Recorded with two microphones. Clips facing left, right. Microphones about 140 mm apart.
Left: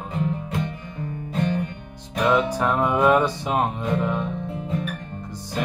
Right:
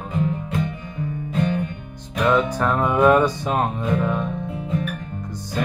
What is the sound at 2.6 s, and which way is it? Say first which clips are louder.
Music: right 2 dB; 10° left (ahead or behind).